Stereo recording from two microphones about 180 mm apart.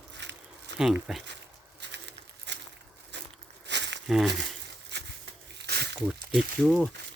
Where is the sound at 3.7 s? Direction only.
75° right (ahead or behind).